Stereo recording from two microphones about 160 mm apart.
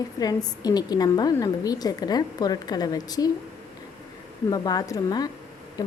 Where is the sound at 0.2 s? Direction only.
25° left (ahead or behind).